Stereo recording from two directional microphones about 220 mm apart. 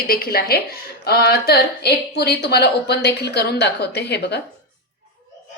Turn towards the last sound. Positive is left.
turn(degrees=50)  # may be behind; listen again after turning